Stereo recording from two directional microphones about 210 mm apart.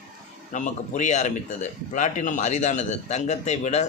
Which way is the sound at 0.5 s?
35° left (ahead or behind).